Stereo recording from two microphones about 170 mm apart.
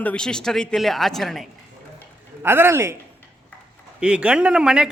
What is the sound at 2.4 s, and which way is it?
Speech, 15° right (ahead or behind).